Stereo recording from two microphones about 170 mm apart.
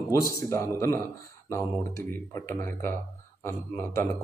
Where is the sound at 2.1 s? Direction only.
15° left (ahead or behind).